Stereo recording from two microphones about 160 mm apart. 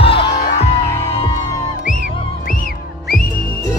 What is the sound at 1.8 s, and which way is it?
Music, 55° left (ahead or behind).